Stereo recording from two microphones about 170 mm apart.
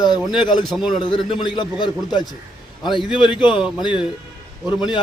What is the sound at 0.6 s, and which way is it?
Speech, centre (ahead or behind).